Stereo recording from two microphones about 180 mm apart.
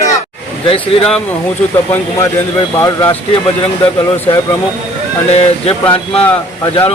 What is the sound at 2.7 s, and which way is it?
Speech, 15° left (ahead or behind).